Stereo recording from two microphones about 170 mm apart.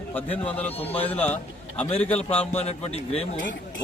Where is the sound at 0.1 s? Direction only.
10° left (ahead or behind).